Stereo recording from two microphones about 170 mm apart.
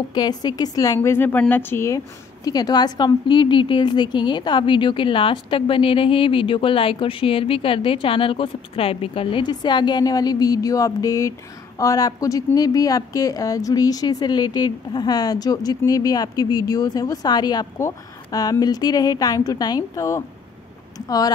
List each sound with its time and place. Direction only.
0.1 s a woman's voice: 25° left (ahead or behind)